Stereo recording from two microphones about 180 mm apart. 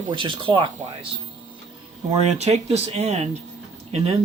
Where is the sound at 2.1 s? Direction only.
35° right (ahead or behind).